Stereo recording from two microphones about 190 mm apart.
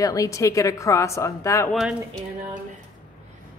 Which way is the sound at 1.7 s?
5° right (ahead or behind).